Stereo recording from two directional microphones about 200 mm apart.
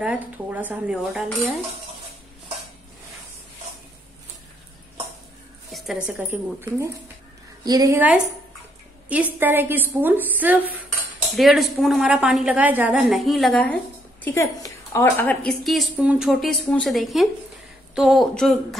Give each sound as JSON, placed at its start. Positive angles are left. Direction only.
{"t": 0.0, "sound": "a woman's voice", "side_deg": -5}
{"t": 5.7, "sound": "a woman's voice", "side_deg": 0}